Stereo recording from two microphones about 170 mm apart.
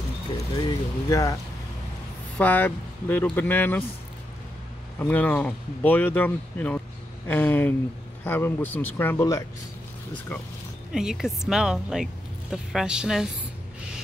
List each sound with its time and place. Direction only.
0.6 s speech: 25° left (ahead or behind)
2.3 s speech: 10° left (ahead or behind)
4.9 s speech: 10° left (ahead or behind)
10.9 s speech: 5° right (ahead or behind)